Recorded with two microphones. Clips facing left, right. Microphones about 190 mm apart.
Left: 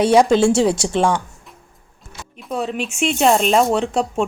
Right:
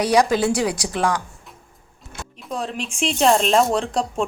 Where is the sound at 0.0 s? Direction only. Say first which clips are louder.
Left 5 dB; 25° left (ahead or behind).